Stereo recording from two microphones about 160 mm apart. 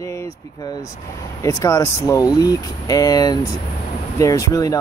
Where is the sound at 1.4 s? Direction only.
20° left (ahead or behind).